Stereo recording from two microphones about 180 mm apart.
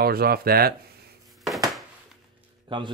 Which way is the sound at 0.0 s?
60° right (ahead or behind).